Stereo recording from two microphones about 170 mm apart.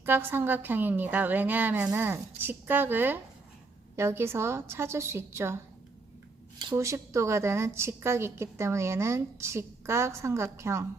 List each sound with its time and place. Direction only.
0.0 s a woman's voice: 15° right (ahead or behind)
6.7 s a woman's voice: 15° right (ahead or behind)